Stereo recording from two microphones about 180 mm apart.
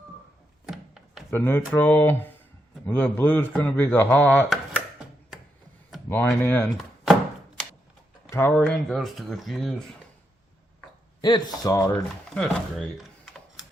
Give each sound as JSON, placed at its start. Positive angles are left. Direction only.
{"t": 0.6, "sound": "a sound", "side_deg": 0}
{"t": 1.3, "sound": "speech", "side_deg": 15}
{"t": 6.1, "sound": "speech", "side_deg": 10}
{"t": 7.0, "sound": "chopping", "side_deg": 0}
{"t": 8.3, "sound": "speech", "side_deg": 15}
{"t": 8.5, "sound": "speech", "side_deg": 5}
{"t": 11.2, "sound": "speech", "side_deg": 25}
{"t": 12.3, "sound": "a sound", "side_deg": 5}